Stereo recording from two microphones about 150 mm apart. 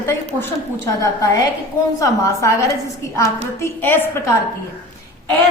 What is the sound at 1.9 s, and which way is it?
A woman's voice, 20° left (ahead or behind).